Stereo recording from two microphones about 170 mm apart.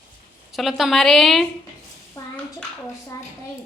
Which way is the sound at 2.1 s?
10° left (ahead or behind).